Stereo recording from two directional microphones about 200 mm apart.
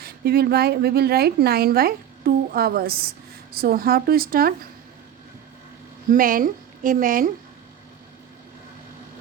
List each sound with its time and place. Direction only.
0.0 s a woman's voice: 50° right (ahead or behind)
6.1 s a woman's voice: 45° right (ahead or behind)